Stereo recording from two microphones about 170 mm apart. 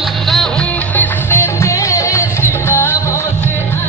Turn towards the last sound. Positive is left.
turn(degrees=15)  # may be behind; listen again after turning